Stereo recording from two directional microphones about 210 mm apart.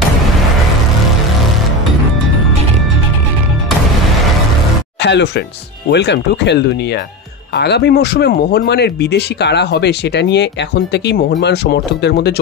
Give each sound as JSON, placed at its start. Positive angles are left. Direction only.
{"t": 5.0, "sound": "speech", "side_deg": 55}